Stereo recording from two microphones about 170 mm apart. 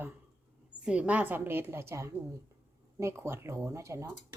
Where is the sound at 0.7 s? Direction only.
5° right (ahead or behind).